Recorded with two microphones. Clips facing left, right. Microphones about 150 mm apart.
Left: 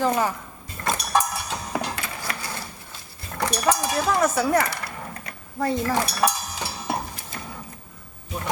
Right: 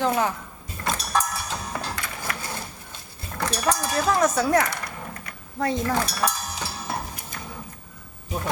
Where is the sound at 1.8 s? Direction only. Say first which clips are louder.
Left 1 dB; 20° left (ahead or behind).